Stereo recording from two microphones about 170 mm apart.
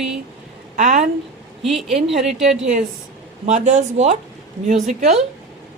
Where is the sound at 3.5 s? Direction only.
45° right (ahead or behind).